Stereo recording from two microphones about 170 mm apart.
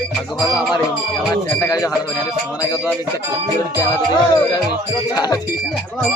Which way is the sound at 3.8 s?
25° left (ahead or behind).